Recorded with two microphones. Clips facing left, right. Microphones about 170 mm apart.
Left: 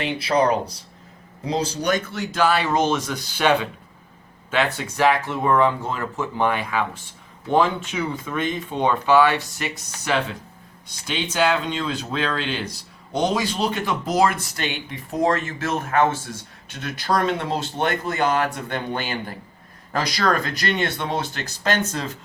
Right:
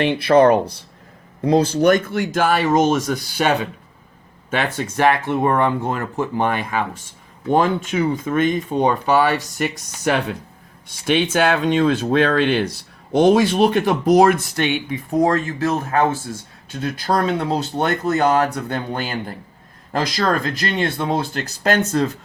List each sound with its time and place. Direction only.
0.0 s speech: 60° right (ahead or behind)
15.4 s speech: 35° right (ahead or behind)
20.2 s speech: 35° right (ahead or behind)